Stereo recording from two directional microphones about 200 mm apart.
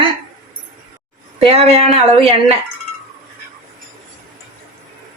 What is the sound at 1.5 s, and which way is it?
Speech, 30° right (ahead or behind).